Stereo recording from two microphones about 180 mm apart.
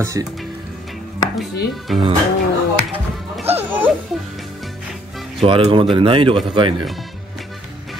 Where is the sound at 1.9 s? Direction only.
Centre (ahead or behind).